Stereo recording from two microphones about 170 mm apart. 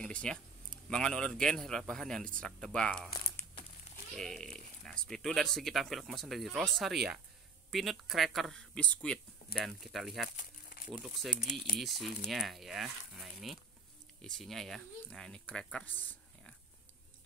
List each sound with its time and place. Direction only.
0.0 s speech: 5° left (ahead or behind)
4.2 s speech: centre (ahead or behind)
10.3 s crumpling: 50° left (ahead or behind)
10.9 s speech: centre (ahead or behind)